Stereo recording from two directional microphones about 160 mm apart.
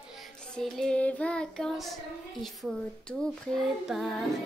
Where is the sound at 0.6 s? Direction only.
5° left (ahead or behind).